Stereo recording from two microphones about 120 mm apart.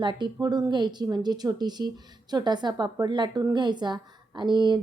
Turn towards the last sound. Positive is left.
turn(degrees=-40)  # may be behind; listen again after turning